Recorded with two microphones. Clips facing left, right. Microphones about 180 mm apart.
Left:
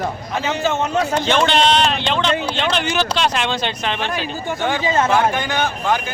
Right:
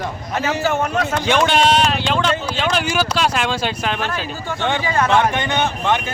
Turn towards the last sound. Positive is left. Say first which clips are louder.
# right 1 dB
turn(degrees=0)  # may be behind; listen again after turning